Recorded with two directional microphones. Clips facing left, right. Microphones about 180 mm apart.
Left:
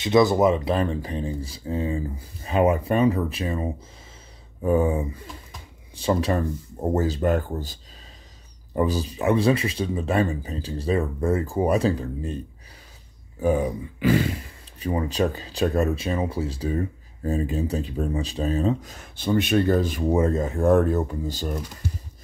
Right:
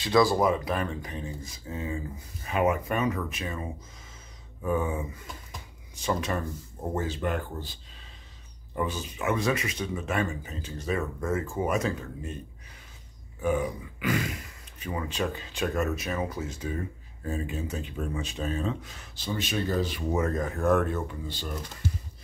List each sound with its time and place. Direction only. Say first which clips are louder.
0.0 s speech: left 5 dB; 20° left (ahead or behind)
13.4 s speech: left 5 dB; 35° left (ahead or behind)
19.1 s speech: left 10 dB; 60° left (ahead or behind)
20.1 s speech: left 7 dB; 30° left (ahead or behind)